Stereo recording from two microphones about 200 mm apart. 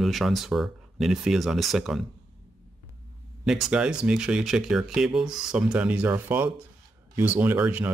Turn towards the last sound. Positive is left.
turn(degrees=-10)  # may be behind; listen again after turning